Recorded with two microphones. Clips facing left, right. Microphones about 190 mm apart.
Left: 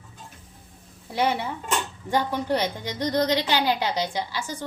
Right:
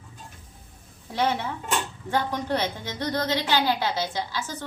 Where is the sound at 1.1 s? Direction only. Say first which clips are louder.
Left 1 dB; 10° left (ahead or behind).